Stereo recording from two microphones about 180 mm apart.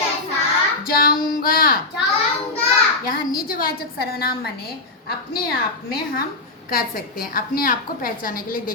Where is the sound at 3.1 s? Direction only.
55° left (ahead or behind).